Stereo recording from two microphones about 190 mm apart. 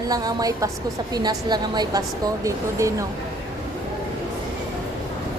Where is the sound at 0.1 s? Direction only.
20° right (ahead or behind).